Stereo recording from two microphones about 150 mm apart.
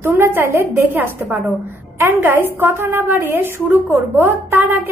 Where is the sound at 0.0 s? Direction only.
15° right (ahead or behind).